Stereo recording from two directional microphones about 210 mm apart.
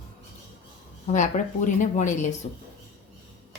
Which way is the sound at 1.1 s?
35° left (ahead or behind).